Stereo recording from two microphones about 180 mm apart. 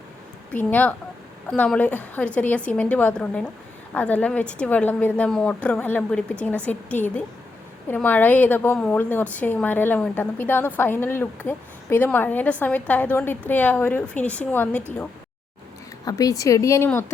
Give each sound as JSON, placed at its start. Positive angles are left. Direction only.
{"t": 0.5, "sound": "a woman's voice", "side_deg": 10}
{"t": 16.0, "sound": "a woman's voice", "side_deg": 20}